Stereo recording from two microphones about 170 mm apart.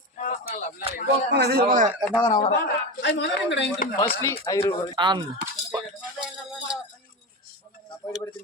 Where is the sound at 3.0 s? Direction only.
90° left.